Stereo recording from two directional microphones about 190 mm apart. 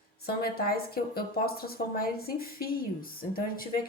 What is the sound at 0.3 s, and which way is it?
Speech, 55° left (ahead or behind).